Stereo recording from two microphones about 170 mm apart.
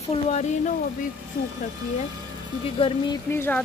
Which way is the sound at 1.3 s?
55° left (ahead or behind).